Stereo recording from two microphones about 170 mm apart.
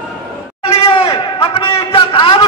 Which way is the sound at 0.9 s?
30° left (ahead or behind).